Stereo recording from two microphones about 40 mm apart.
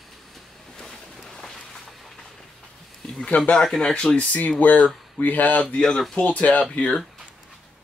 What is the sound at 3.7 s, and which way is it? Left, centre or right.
Speech, centre.